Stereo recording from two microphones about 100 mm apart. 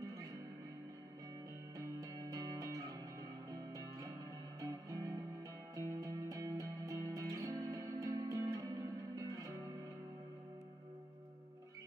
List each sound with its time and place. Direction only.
1.8 s music: 40° right (ahead or behind)